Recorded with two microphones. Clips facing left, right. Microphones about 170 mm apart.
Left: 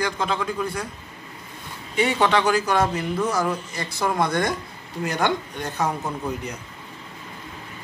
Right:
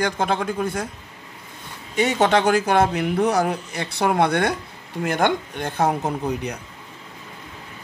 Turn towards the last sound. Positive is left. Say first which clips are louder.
# right 4 dB
turn(degrees=-60)  # may be behind; listen again after turning